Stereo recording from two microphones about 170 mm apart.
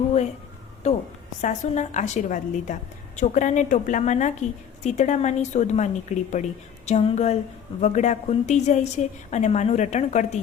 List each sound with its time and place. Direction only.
0.8 s a woman's voice: 40° left (ahead or behind)